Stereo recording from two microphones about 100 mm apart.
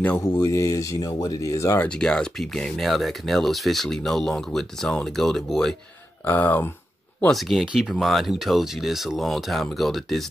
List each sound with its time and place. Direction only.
0.2 s speech: 40° left (ahead or behind)
1.9 s speech: 10° left (ahead or behind)
6.2 s speech: 15° left (ahead or behind)
7.2 s speech: centre (ahead or behind)